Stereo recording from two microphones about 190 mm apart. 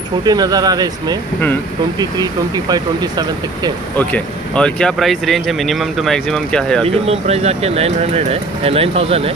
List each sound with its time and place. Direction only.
0.2 s speech: 20° right (ahead or behind)
3.9 s speech: 5° left (ahead or behind)
7.1 s speech: 35° right (ahead or behind)